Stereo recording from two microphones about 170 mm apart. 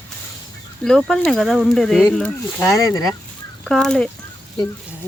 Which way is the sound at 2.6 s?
20° left (ahead or behind).